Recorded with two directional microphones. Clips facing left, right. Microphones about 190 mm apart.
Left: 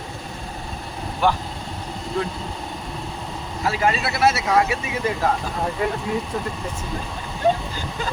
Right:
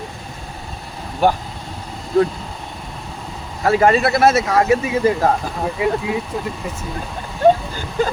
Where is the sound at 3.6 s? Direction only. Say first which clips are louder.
Right 8 dB; 55° right (ahead or behind); by 5.2 s 35° right (ahead or behind).